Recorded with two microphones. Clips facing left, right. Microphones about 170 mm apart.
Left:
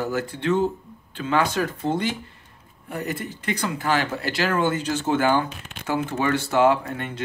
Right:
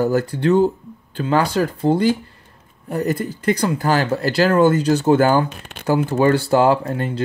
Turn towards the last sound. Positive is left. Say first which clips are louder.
# right 4 dB
turn(degrees=-35)  # may be behind; listen again after turning